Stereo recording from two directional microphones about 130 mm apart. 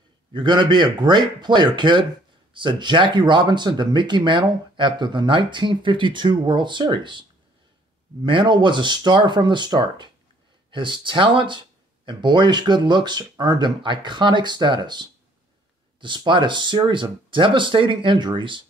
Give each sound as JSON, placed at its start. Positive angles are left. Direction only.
{"t": 0.3, "sound": "speech", "side_deg": -35}